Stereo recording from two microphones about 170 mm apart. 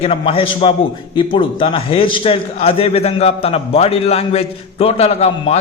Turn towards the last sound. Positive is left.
turn(degrees=40)  # may be behind; listen again after turning